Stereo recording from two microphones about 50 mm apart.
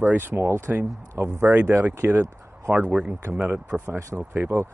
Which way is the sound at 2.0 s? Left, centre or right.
Right.